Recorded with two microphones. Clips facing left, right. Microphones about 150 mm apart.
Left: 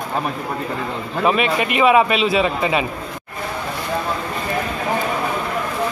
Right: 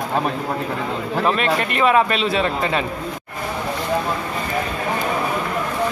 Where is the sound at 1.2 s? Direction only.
10° left (ahead or behind).